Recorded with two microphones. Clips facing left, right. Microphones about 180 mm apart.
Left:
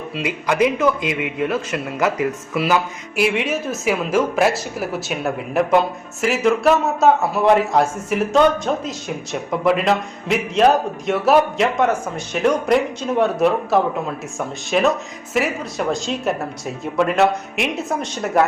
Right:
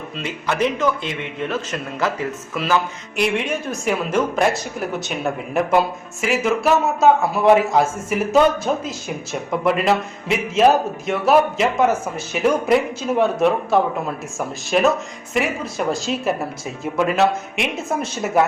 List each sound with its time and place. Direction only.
0.2 s a man's voice: 10° left (ahead or behind)